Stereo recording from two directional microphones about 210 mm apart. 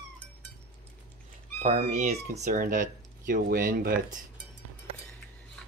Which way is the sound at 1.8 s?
35° right (ahead or behind).